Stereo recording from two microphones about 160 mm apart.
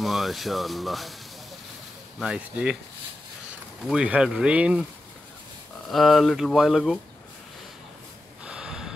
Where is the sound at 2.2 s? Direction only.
5° right (ahead or behind).